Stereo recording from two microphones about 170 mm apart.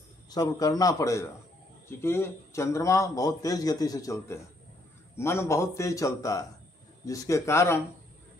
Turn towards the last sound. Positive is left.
turn(degrees=15)  # may be behind; listen again after turning